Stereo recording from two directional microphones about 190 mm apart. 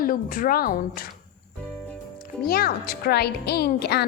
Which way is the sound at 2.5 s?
55° left (ahead or behind).